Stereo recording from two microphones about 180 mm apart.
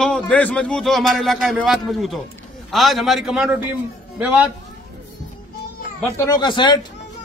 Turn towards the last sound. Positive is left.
turn(degrees=25)  # may be behind; listen again after turning